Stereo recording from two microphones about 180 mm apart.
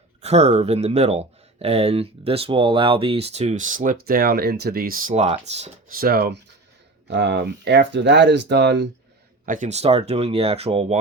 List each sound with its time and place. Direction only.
0.2 s speech: 35° right (ahead or behind)
5.9 s speech: 55° right (ahead or behind)
7.1 s speech: 75° right (ahead or behind)
9.5 s speech: 40° right (ahead or behind)